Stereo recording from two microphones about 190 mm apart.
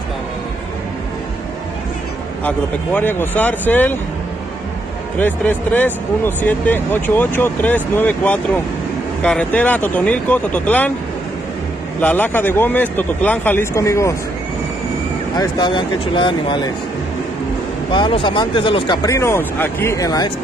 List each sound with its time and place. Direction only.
2.4 s speech: 10° left (ahead or behind)
5.2 s speech: 10° left (ahead or behind)
12.0 s speech: 10° left (ahead or behind)
15.3 s speech: 25° left (ahead or behind)
17.9 s speech: 25° left (ahead or behind)